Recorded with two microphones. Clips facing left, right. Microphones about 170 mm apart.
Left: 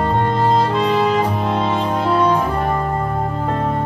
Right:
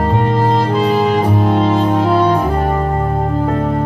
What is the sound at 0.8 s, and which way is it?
Music, 35° right (ahead or behind).